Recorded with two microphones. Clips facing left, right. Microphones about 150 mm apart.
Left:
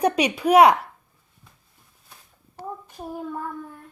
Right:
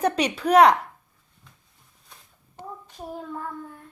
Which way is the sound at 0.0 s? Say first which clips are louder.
Left 2 dB; 10° left (ahead or behind).